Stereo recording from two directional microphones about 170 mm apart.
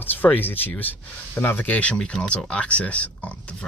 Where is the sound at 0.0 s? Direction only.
10° left (ahead or behind).